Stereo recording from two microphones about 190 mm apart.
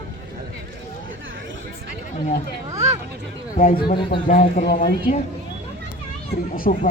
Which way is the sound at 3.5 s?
45° left (ahead or behind).